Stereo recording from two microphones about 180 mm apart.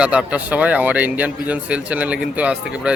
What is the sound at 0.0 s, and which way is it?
Speech, 5° right (ahead or behind).